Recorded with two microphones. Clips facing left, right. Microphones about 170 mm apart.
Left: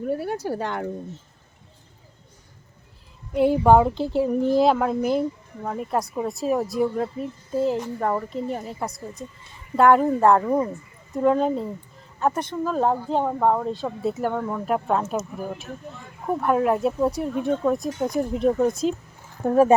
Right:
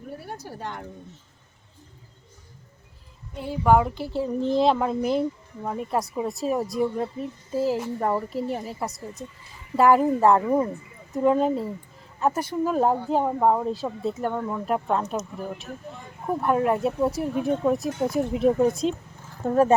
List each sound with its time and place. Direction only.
0.1 s speech: 90° left
3.3 s speech: 70° left (ahead or behind)
3.6 s speech: 25° left (ahead or behind); by 19.7 s 10° left (ahead or behind)